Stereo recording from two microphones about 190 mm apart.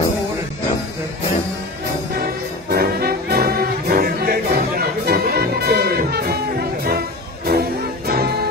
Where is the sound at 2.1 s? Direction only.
55° right (ahead or behind).